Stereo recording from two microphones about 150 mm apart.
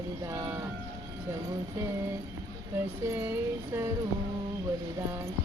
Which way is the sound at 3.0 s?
20° right (ahead or behind).